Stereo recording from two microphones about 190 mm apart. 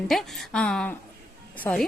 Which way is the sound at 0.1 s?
Centre (ahead or behind).